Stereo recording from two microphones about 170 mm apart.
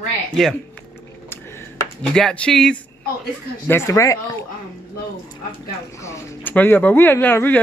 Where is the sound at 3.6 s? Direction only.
15° left (ahead or behind).